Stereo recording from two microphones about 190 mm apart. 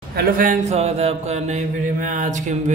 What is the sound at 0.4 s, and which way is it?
Mantra, 40° right (ahead or behind).